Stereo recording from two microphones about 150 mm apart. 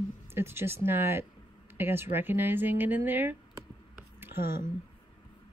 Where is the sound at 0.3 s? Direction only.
15° right (ahead or behind).